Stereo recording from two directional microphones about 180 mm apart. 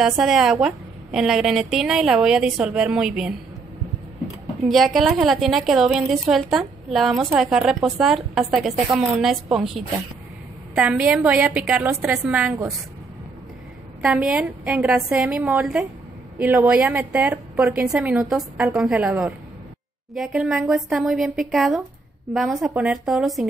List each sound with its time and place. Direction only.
0.2 s a woman's voice: centre (ahead or behind)
4.6 s a woman's voice: centre (ahead or behind)
14.0 s a woman's voice: 5° right (ahead or behind)